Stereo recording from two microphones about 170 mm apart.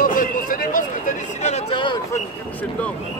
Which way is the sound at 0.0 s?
55° left (ahead or behind).